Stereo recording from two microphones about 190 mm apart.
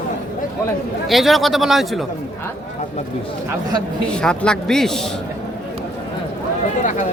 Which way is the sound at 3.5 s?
20° right (ahead or behind).